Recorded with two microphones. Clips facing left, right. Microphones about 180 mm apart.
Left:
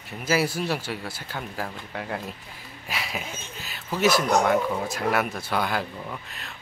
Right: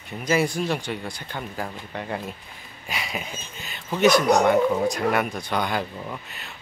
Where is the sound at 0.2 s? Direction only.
5° left (ahead or behind).